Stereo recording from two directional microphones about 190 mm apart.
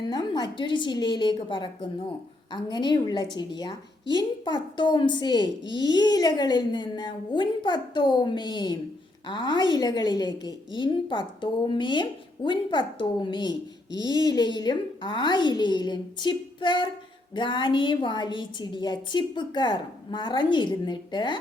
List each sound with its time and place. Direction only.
0.1 s a woman's voice: 20° left (ahead or behind)